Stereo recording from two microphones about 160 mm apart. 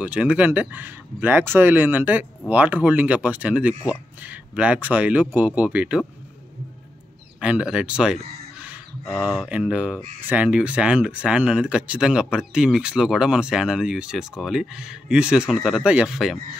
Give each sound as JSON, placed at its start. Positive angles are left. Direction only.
{"t": 0.0, "sound": "speech", "side_deg": -5}
{"t": 7.3, "sound": "speech", "side_deg": -5}